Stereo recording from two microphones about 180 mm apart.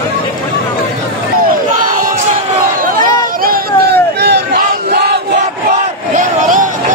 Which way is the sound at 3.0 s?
60° right (ahead or behind).